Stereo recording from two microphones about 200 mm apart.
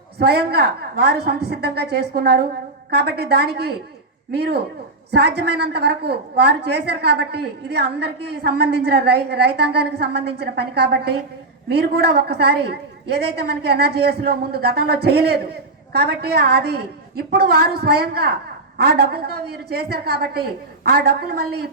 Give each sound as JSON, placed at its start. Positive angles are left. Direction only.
{"t": 0.2, "sound": "a woman's voice", "side_deg": -55}